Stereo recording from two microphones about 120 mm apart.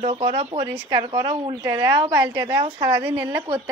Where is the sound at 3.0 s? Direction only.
15° right (ahead or behind).